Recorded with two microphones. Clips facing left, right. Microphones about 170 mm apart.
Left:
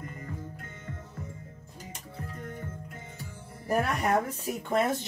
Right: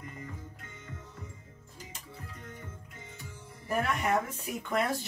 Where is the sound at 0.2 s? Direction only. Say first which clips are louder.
Left 4 dB; 50° left (ahead or behind).